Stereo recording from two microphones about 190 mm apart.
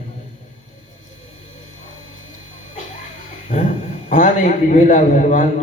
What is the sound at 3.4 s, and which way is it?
Speech, 40° left (ahead or behind).